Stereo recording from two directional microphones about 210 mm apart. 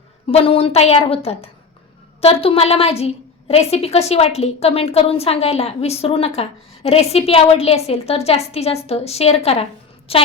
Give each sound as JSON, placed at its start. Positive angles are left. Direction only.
{"t": 0.3, "sound": "a woman's voice", "side_deg": 25}